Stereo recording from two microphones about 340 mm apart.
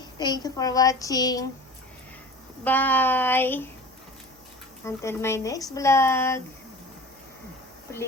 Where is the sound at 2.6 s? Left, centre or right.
Centre.